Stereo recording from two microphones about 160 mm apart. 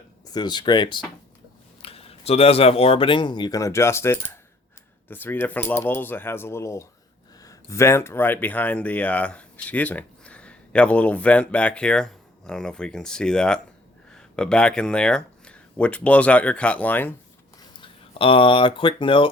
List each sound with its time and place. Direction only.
0.3 s speech: 25° left (ahead or behind)
17.7 s speech: 35° left (ahead or behind)